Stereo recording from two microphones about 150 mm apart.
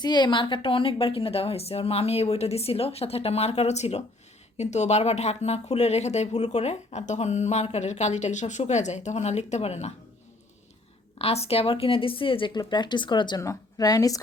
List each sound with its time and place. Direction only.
0.0 s a woman's voice: 30° left (ahead or behind); by 9.9 s 45° left (ahead or behind)
11.2 s a woman's voice: 40° left (ahead or behind); by 14.2 s 25° left (ahead or behind)